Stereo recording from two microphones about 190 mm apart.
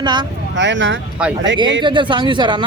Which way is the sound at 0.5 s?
70° right (ahead or behind).